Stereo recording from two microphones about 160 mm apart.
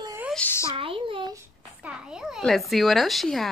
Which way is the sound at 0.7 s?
35° right (ahead or behind).